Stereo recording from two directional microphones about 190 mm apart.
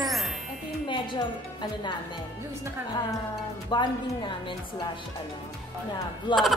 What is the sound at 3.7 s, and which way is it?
Speech, 25° left (ahead or behind).